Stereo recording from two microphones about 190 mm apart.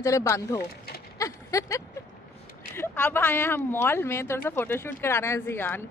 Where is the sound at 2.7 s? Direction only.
10° left (ahead or behind).